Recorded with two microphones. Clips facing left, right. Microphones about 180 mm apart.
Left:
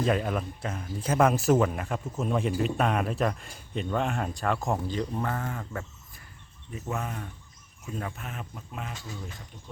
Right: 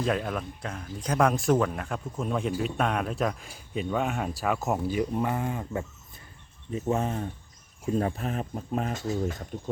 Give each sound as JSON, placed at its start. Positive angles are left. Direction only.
{"t": 0.0, "sound": "speech", "side_deg": 0}
{"t": 6.7, "sound": "speech", "side_deg": -30}